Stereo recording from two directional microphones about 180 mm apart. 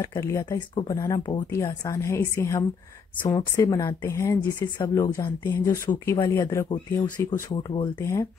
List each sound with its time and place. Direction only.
0.0 s speech: 15° left (ahead or behind)
8.0 s speech: 15° left (ahead or behind)